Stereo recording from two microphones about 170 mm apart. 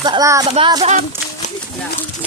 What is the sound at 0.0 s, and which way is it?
Speech, 20° right (ahead or behind).